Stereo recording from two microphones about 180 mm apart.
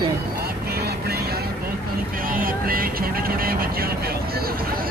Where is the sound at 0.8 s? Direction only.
60° right (ahead or behind).